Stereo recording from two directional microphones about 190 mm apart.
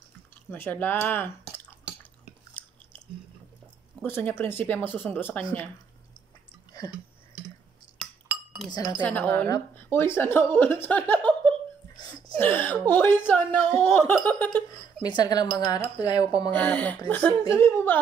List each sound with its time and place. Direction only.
0.5 s a woman's voice: 10° left (ahead or behind)
1.5 s drip: 5° right (ahead or behind)
4.0 s a woman's voice: 10° left (ahead or behind)
9.0 s a woman's voice: 10° left (ahead or behind)
14.1 s laughter: 5° left (ahead or behind)
15.0 s a woman's voice: 20° left (ahead or behind)